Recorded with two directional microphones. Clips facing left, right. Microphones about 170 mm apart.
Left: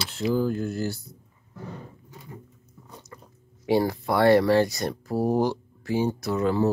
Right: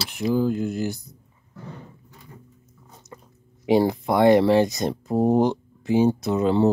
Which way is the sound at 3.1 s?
20° right (ahead or behind).